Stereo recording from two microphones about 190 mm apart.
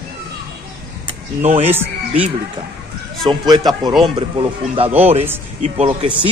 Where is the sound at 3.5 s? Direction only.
20° right (ahead or behind).